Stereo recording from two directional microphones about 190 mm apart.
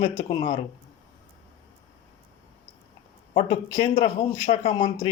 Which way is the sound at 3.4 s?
35° left (ahead or behind).